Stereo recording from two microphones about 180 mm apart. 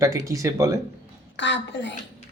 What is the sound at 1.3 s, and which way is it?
Speech, 85° left.